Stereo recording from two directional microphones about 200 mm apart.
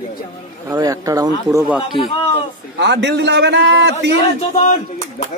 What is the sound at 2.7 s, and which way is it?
A man's voice, 60° right (ahead or behind).